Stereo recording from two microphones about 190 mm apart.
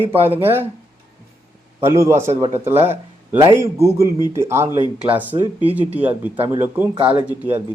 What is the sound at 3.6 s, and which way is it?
Speech, 15° right (ahead or behind).